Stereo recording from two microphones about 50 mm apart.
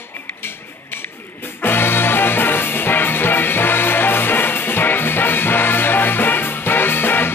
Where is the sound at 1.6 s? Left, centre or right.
Left.